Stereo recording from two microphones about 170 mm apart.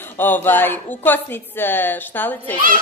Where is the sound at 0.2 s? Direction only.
10° left (ahead or behind).